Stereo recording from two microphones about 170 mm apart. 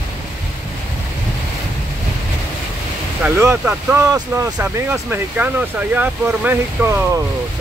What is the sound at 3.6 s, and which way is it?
Speech, 15° right (ahead or behind).